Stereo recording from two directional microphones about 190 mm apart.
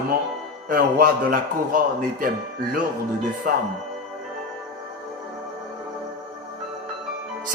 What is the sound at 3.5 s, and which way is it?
Speech, 50° right (ahead or behind).